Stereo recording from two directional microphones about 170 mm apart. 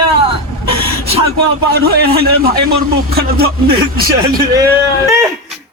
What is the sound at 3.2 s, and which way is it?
Speech, 65° right (ahead or behind).